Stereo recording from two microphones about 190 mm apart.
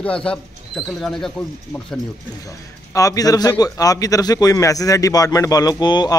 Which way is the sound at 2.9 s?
15° left (ahead or behind).